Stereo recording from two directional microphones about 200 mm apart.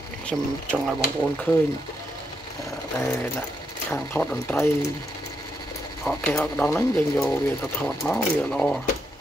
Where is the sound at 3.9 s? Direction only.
10° left (ahead or behind).